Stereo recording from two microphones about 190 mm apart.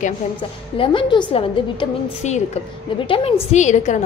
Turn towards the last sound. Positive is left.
turn(degrees=40)  # may be behind; listen again after turning